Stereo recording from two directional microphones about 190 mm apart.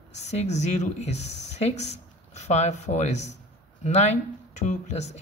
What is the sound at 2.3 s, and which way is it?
Speech, 35° left (ahead or behind).